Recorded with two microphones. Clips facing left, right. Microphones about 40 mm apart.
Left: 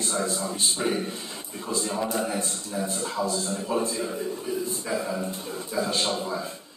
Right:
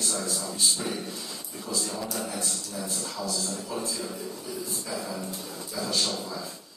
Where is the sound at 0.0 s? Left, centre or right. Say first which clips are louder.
Left 4 dB; left.